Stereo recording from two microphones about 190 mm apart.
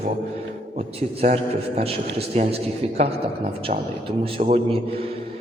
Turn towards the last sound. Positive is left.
turn(degrees=-30)  # may be behind; listen again after turning